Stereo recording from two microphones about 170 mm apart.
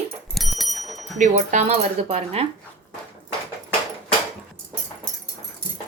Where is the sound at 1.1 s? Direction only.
45° right (ahead or behind).